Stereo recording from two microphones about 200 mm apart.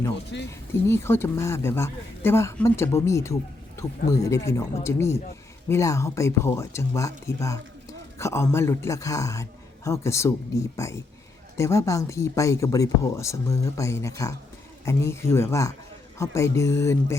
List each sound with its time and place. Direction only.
0.3 s speech: 65° left (ahead or behind)
0.7 s a woman's voice: 10° left (ahead or behind)